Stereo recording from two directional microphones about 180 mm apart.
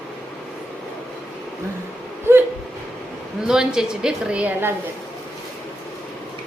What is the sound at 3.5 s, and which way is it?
A woman's voice, 5° right (ahead or behind).